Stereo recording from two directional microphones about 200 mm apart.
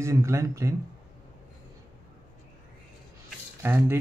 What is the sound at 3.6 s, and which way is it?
Speech, 10° right (ahead or behind).